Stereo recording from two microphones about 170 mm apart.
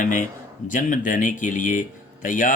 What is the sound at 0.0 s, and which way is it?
Speech, 50° left (ahead or behind).